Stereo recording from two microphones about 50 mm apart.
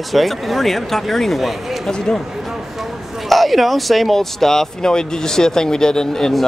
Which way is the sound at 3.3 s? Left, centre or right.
Centre.